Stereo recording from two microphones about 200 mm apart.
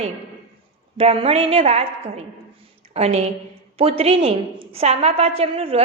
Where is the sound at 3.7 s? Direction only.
30° right (ahead or behind).